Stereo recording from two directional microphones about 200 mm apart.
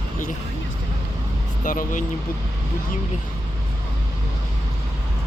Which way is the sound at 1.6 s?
40° left (ahead or behind).